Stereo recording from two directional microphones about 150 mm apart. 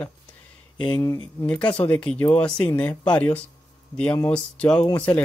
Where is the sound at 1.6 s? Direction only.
35° left (ahead or behind).